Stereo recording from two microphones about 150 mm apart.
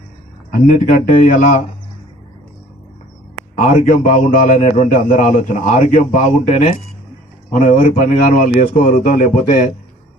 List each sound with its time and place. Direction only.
0.5 s a man's voice: 60° left (ahead or behind)
3.6 s a man's voice: 60° left (ahead or behind)
7.5 s a man's voice: 60° left (ahead or behind)